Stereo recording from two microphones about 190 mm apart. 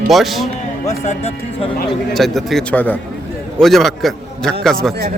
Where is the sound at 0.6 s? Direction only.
35° left (ahead or behind).